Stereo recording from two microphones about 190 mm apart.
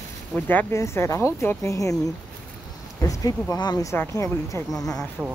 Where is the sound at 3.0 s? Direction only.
20° left (ahead or behind).